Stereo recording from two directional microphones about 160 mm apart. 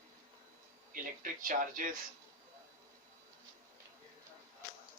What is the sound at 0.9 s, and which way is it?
Speech, 60° right (ahead or behind).